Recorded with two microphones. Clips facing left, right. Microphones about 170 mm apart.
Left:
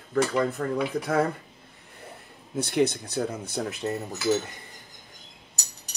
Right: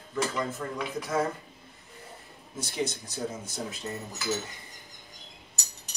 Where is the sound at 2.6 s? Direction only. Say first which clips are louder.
Left 9 dB; 60° left (ahead or behind).